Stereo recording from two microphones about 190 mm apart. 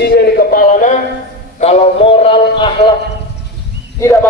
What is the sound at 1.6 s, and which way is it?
Music, 35° left (ahead or behind).